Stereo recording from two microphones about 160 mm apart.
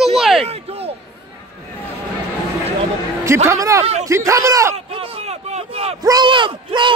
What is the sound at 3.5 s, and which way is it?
Speech, 20° right (ahead or behind).